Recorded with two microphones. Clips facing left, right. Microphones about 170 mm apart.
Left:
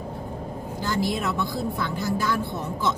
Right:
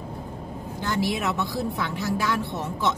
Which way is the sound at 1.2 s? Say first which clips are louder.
Even; 65° right (ahead or behind).